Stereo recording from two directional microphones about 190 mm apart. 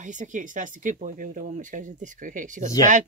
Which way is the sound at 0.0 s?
40° right (ahead or behind).